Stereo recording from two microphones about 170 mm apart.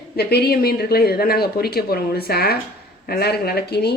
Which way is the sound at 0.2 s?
70° left (ahead or behind).